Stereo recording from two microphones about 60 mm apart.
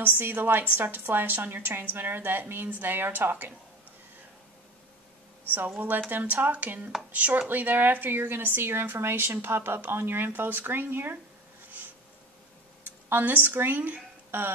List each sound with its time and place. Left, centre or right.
0.0 s speech: right
5.8 s speech: right
13.1 s a woman's voice: right